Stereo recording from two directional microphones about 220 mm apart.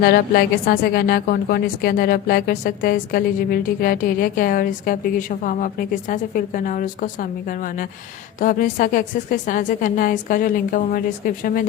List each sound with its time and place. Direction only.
0.0 s a woman's voice: 45° left (ahead or behind)